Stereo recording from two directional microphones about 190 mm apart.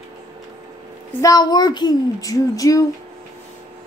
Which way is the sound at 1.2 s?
20° left (ahead or behind).